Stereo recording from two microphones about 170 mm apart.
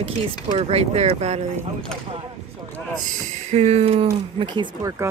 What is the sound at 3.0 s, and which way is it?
Speech, 40° right (ahead or behind).